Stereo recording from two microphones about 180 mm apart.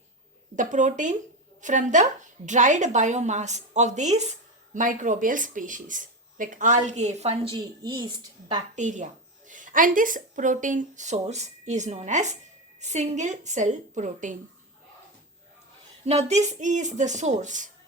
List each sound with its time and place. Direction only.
0.5 s speech: 45° right (ahead or behind)
7.5 s a woman's voice: 25° right (ahead or behind)
8.7 s speech: 40° right (ahead or behind)
16.0 s speech: 35° right (ahead or behind)